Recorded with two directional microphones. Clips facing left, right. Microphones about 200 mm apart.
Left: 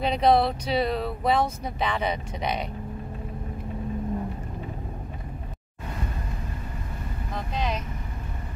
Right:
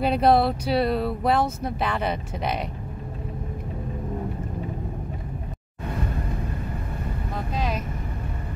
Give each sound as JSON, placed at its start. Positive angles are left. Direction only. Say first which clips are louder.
{"t": 0.0, "sound": "speech", "louder": "right 2 dB", "side_deg": -5}
{"t": 7.5, "sound": "speech", "louder": "right 1 dB", "side_deg": -5}